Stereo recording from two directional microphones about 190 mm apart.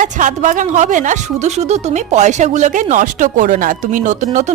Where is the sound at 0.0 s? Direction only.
40° right (ahead or behind).